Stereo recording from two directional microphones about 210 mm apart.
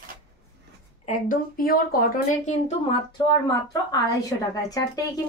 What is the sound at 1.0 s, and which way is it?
Speech, 40° left (ahead or behind).